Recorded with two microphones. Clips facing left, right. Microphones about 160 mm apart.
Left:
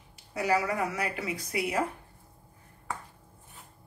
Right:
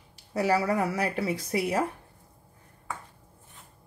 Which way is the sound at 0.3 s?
35° right (ahead or behind).